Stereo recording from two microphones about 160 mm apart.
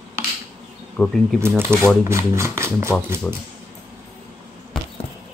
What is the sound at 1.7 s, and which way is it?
Speech, 15° right (ahead or behind).